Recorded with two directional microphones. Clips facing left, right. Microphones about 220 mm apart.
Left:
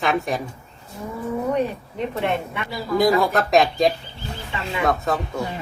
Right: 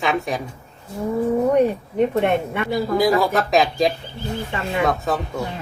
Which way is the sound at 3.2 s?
Centre (ahead or behind).